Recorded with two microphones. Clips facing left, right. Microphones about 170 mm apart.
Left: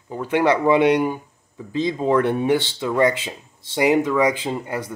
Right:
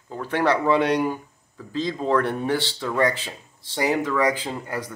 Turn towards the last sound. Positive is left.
turn(degrees=20)  # may be behind; listen again after turning